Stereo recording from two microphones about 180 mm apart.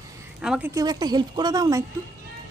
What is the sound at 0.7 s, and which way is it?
Speech, 20° right (ahead or behind).